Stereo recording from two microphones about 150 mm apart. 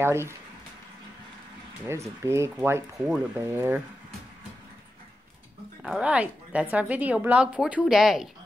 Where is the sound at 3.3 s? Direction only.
15° right (ahead or behind).